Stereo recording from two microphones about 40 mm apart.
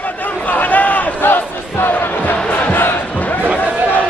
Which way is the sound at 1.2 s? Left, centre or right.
Left.